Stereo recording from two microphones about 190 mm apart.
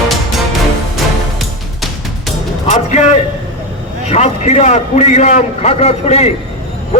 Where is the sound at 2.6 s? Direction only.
35° left (ahead or behind).